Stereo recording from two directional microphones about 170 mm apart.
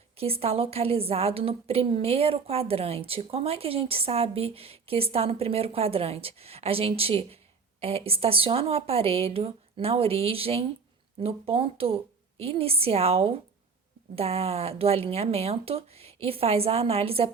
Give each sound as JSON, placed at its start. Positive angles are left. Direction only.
{"t": 0.2, "sound": "a woman's voice", "side_deg": -35}